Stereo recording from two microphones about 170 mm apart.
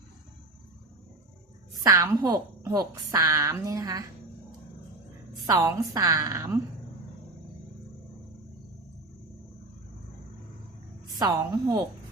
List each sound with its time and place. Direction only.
1.8 s a woman's voice: 15° right (ahead or behind)
5.5 s a woman's voice: 20° right (ahead or behind)
11.2 s a woman's voice: 20° right (ahead or behind)